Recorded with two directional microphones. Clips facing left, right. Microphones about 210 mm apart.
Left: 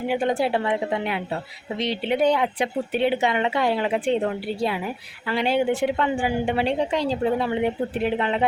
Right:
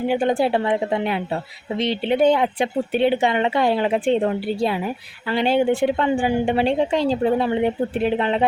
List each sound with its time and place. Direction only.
0.1 s a woman's voice: 30° right (ahead or behind)
5.3 s a woman's voice: 25° right (ahead or behind)